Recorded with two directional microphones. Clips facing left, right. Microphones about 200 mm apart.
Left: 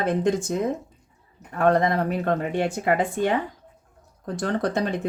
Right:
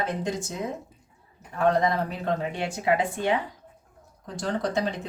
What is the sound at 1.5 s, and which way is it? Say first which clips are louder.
Speech: left 3 dB; 55° left (ahead or behind).